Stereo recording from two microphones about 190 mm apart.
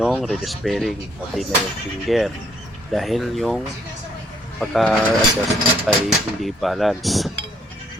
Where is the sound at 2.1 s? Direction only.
Centre (ahead or behind).